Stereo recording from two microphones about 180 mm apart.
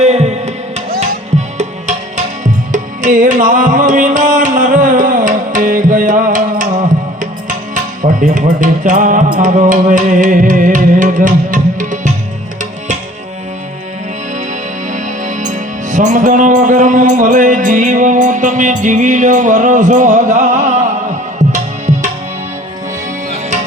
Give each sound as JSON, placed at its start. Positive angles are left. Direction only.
{"t": 0.0, "sound": "music", "side_deg": -35}
{"t": 2.4, "sound": "music", "side_deg": -45}
{"t": 14.8, "sound": "music", "side_deg": -45}